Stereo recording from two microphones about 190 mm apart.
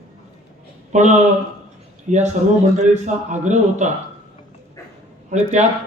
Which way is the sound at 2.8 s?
40° right (ahead or behind).